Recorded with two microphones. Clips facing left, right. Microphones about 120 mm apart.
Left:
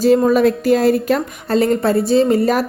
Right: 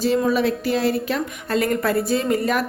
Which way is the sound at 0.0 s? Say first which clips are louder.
Left 7 dB; 45° left (ahead or behind).